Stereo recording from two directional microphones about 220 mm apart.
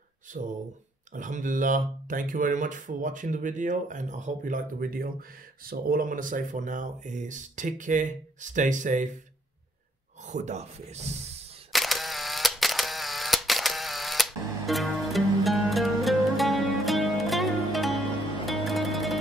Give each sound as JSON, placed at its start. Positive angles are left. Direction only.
{"t": 0.3, "sound": "speech", "side_deg": -35}
{"t": 10.2, "sound": "speech", "side_deg": -30}
{"t": 11.7, "sound": "camera", "side_deg": 0}